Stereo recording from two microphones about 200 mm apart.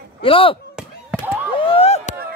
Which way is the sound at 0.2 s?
25° left (ahead or behind).